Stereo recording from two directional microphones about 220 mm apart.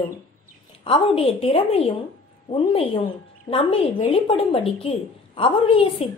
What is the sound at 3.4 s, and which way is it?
A woman's voice, 25° left (ahead or behind).